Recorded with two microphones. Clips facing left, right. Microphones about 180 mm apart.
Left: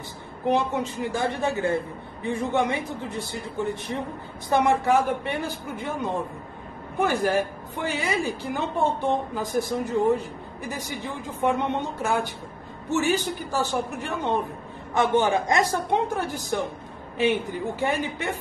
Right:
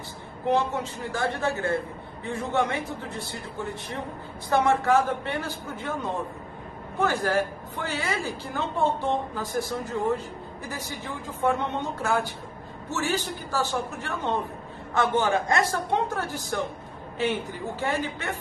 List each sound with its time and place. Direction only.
0.5 s a woman's voice: 15° left (ahead or behind)
4.5 s a woman's voice: 15° left (ahead or behind)
7.0 s a woman's voice: 15° left (ahead or behind)
11.4 s a woman's voice: 20° left (ahead or behind)